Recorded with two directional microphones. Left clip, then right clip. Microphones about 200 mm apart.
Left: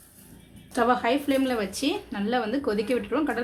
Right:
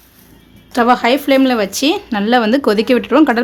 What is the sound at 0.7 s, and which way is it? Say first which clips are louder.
Speech: right 11 dB; 35° right (ahead or behind).